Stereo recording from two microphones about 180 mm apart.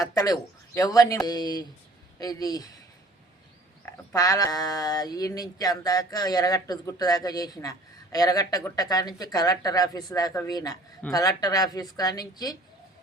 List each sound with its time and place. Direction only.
0.0 s speech: 20° left (ahead or behind)
3.8 s speech: 20° left (ahead or behind)